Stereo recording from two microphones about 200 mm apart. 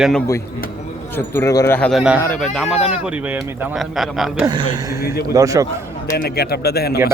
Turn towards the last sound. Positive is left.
turn(degrees=50)  # may be behind; listen again after turning